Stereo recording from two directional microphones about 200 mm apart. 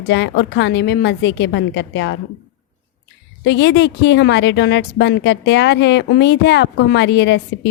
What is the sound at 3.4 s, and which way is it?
A woman's voice, 60° left (ahead or behind).